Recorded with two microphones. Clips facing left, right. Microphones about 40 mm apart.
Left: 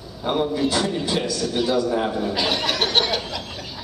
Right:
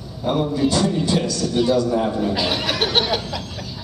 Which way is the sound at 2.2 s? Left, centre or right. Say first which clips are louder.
Right 1 dB; centre.